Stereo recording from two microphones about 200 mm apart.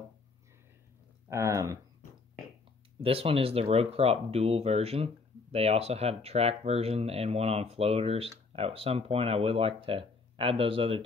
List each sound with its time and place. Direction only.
1.3 s speech: 15° right (ahead or behind)
3.0 s speech: 30° right (ahead or behind)